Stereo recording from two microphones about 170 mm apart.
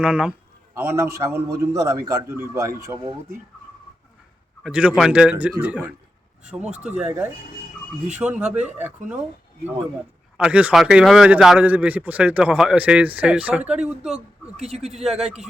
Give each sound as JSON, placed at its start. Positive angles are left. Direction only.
{"t": 0.0, "sound": "a man's voice", "side_deg": -5}
{"t": 0.7, "sound": "a man's voice", "side_deg": -20}
{"t": 4.6, "sound": "a man's voice", "side_deg": -5}
{"t": 10.3, "sound": "a man's voice", "side_deg": -5}
{"t": 14.5, "sound": "a man's voice", "side_deg": -40}